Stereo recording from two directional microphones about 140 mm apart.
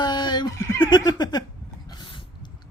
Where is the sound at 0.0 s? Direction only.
30° left (ahead or behind).